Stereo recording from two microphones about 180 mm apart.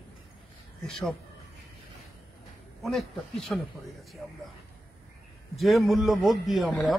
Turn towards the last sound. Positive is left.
turn(degrees=0)  # may be behind; listen again after turning